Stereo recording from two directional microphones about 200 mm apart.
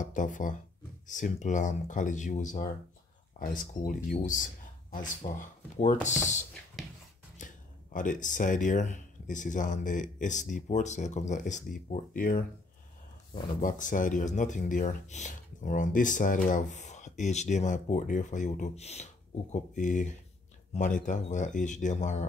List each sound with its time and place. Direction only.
0.0 s speech: 40° left (ahead or behind)
7.3 s speech: 40° left (ahead or behind)
13.6 s speech: 40° left (ahead or behind)